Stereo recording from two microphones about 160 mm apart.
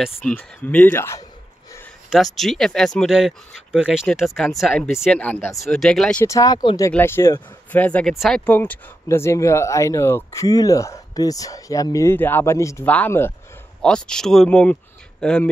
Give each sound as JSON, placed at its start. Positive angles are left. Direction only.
{"t": 0.2, "sound": "speech", "side_deg": 10}
{"t": 2.0, "sound": "speech", "side_deg": 0}
{"t": 6.2, "sound": "speech", "side_deg": 20}
{"t": 6.9, "sound": "speech", "side_deg": 15}